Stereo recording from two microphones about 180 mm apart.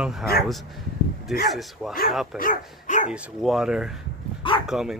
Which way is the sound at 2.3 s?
45° left (ahead or behind).